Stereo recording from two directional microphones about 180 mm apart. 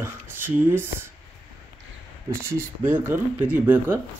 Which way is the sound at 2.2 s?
15° right (ahead or behind).